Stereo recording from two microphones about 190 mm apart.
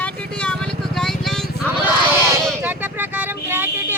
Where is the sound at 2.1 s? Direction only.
15° right (ahead or behind).